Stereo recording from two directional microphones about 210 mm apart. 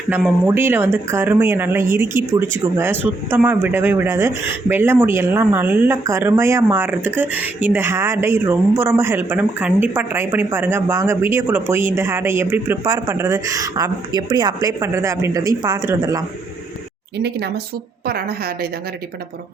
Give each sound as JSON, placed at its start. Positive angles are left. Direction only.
{"t": 0.1, "sound": "speech", "side_deg": -10}
{"t": 17.2, "sound": "a woman's voice", "side_deg": -50}